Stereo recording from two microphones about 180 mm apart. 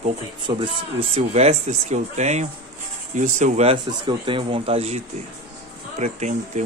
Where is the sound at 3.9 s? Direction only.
25° right (ahead or behind).